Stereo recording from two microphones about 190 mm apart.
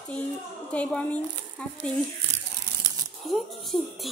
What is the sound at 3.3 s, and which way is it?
Speech, centre (ahead or behind).